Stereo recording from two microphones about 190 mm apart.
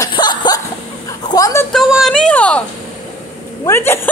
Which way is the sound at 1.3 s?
15° left (ahead or behind).